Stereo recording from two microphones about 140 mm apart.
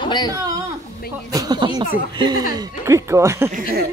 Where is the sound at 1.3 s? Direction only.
30° right (ahead or behind).